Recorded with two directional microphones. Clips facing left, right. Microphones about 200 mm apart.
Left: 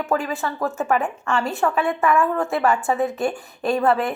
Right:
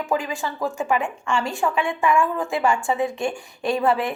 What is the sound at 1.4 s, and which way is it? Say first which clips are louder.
Speech: left 3 dB; 5° left (ahead or behind).